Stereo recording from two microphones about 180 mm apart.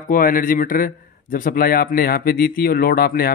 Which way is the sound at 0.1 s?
50° left (ahead or behind).